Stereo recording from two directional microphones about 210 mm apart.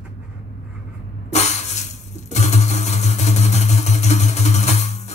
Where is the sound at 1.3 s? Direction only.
30° left (ahead or behind).